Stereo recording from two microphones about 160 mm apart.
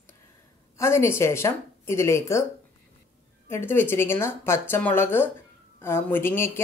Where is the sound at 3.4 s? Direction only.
15° left (ahead or behind).